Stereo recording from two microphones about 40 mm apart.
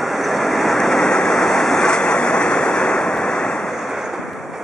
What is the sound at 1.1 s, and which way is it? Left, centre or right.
Waves, left.